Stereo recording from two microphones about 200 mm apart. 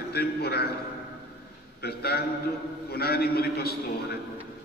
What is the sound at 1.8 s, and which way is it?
A man's voice, 50° left (ahead or behind).